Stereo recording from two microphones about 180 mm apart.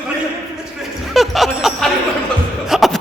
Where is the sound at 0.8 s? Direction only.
Centre (ahead or behind).